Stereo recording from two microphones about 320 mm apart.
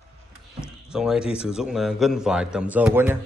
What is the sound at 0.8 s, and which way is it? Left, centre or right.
A man's voice, centre.